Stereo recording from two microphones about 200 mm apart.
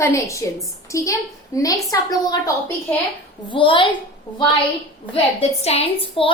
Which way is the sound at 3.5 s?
25° left (ahead or behind).